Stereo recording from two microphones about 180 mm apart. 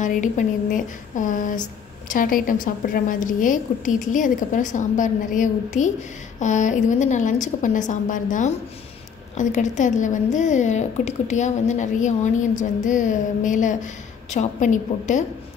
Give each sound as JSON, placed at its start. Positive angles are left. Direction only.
{"t": 0.0, "sound": "speech", "side_deg": 45}